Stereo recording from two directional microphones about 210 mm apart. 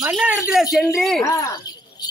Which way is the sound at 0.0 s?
5° right (ahead or behind).